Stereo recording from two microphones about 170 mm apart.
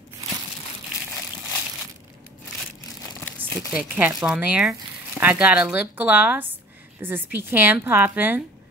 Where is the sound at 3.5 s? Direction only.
10° right (ahead or behind).